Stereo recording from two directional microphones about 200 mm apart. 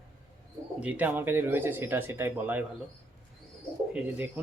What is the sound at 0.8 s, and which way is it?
Speech, 5° right (ahead or behind).